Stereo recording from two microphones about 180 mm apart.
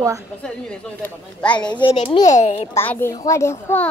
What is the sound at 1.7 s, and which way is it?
Speech, 25° left (ahead or behind).